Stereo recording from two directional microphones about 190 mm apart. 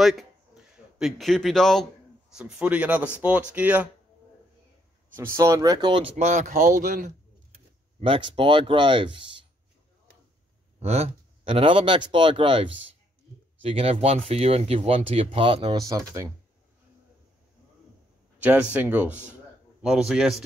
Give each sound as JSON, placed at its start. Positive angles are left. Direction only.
{"t": 0.0, "sound": "a man's voice", "side_deg": 0}
{"t": 5.1, "sound": "speech", "side_deg": -15}
{"t": 8.0, "sound": "speech", "side_deg": -25}
{"t": 10.8, "sound": "speech", "side_deg": -35}
{"t": 18.4, "sound": "a man's voice", "side_deg": -10}